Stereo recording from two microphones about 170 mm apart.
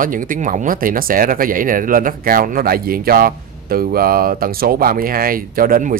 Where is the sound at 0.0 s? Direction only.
55° right (ahead or behind).